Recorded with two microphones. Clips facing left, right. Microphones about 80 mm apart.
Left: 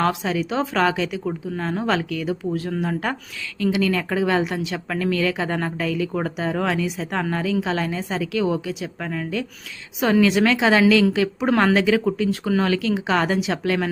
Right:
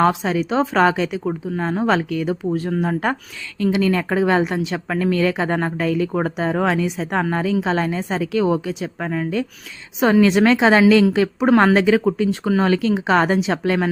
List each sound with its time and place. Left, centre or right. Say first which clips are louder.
0.0 s a woman's voice: right 4 dB; right
2.5 s a woman's voice: right 4 dB; right
2.8 s a woman's voice: right 4 dB; right